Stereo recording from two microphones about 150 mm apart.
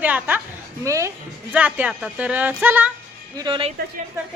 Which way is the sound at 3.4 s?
35° right (ahead or behind).